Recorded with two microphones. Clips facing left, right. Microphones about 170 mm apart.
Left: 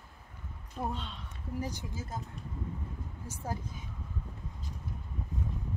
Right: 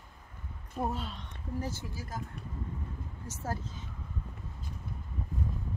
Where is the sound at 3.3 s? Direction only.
15° left (ahead or behind).